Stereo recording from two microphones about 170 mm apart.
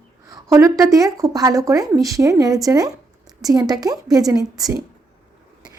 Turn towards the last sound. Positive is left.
turn(degrees=-20)  # may be behind; listen again after turning